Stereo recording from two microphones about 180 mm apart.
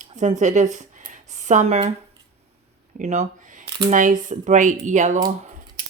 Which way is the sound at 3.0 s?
40° right (ahead or behind).